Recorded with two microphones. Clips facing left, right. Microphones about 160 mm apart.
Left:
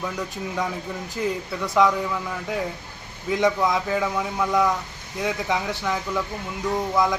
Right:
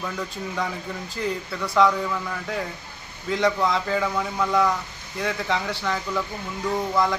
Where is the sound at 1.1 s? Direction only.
20° left (ahead or behind).